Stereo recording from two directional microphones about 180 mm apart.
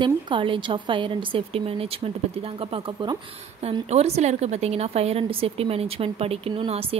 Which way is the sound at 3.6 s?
35° right (ahead or behind).